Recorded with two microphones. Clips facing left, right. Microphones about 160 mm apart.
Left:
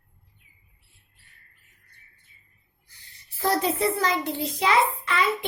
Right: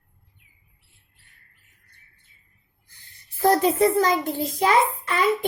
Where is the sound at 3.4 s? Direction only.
45° right (ahead or behind).